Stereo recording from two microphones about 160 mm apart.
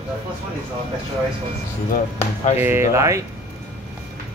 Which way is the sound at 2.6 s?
15° right (ahead or behind).